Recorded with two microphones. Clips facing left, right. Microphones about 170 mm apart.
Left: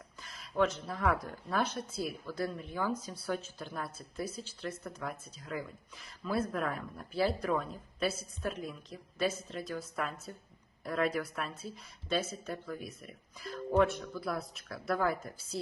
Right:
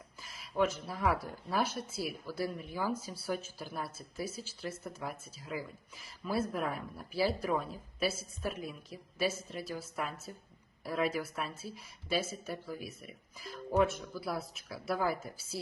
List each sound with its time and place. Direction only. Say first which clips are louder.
0.2 s speech: left 1 dB; 5° right (ahead or behind)